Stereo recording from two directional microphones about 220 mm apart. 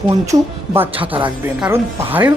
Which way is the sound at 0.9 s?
25° right (ahead or behind).